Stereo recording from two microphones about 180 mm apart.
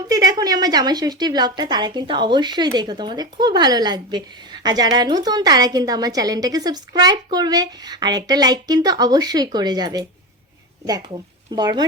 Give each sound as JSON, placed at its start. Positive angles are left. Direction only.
{"t": 0.1, "sound": "a woman's voice", "side_deg": -20}
{"t": 11.5, "sound": "a woman's voice", "side_deg": -25}